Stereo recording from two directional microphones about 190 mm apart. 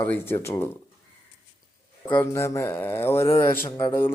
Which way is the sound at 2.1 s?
15° left (ahead or behind).